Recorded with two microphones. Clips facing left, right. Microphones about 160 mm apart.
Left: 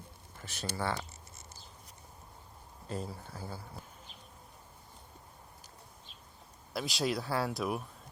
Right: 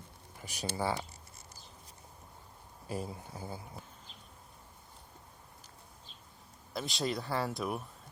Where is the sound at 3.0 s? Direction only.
20° right (ahead or behind).